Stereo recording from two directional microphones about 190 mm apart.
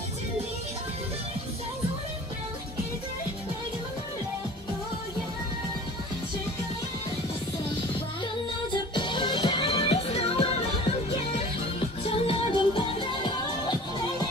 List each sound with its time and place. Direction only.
8.7 s music: 25° left (ahead or behind)